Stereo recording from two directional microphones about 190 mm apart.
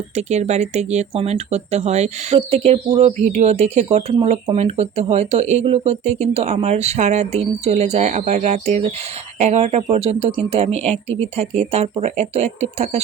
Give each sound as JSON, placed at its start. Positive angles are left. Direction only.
{"t": 0.2, "sound": "speech", "side_deg": -35}